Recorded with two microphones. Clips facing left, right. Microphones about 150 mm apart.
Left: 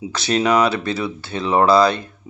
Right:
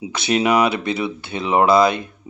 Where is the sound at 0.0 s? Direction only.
15° right (ahead or behind).